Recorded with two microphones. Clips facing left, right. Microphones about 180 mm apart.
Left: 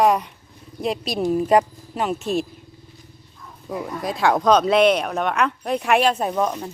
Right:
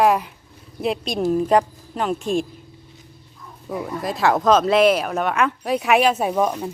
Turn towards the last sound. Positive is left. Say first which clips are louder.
# right 2 dB
turn(degrees=-5)  # may be behind; listen again after turning